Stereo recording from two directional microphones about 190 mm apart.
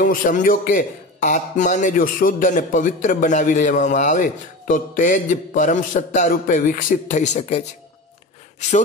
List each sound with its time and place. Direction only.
0.0 s a man's voice: 45° left (ahead or behind)